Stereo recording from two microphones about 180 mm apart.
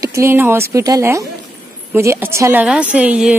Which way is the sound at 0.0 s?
15° right (ahead or behind).